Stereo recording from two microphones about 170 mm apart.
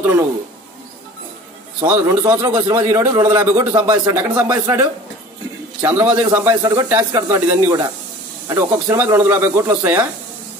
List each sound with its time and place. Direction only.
0.0 s speech: 15° right (ahead or behind)
1.8 s speech: 10° right (ahead or behind)
3.0 s speech: 15° right (ahead or behind)